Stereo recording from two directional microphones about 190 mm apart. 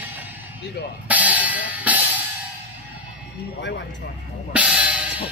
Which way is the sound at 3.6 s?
70° left (ahead or behind).